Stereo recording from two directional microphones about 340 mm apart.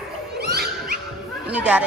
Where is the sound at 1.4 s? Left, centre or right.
Centre.